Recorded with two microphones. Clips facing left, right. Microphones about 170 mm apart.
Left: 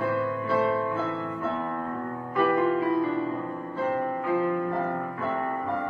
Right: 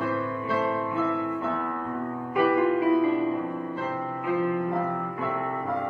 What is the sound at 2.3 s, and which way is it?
Music, 15° right (ahead or behind).